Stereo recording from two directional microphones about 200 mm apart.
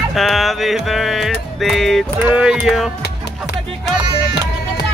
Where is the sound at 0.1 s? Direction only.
Centre (ahead or behind).